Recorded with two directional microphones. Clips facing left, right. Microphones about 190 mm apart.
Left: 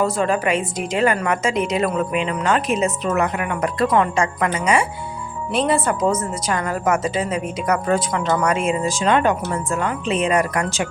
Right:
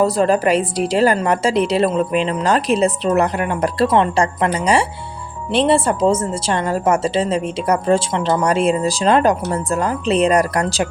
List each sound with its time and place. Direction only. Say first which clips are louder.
0.0 s a woman's voice: right 4 dB; 35° right (ahead or behind)